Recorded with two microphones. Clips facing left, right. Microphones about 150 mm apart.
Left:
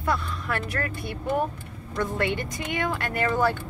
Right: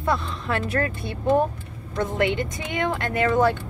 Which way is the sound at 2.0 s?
20° right (ahead or behind).